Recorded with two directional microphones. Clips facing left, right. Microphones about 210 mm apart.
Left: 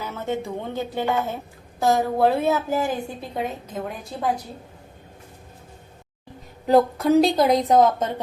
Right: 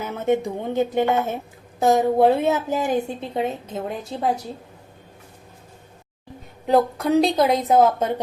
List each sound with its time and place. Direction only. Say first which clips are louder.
0.0 s a woman's voice: right 6 dB; 20° right (ahead or behind)
6.7 s a woman's voice: left 1 dB; centre (ahead or behind)